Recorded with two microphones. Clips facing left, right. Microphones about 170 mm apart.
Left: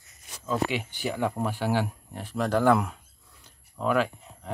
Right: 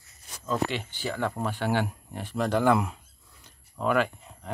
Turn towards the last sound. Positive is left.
turn(degrees=0)  # may be behind; listen again after turning